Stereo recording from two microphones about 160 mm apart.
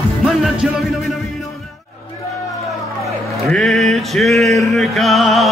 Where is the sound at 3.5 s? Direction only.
Centre (ahead or behind).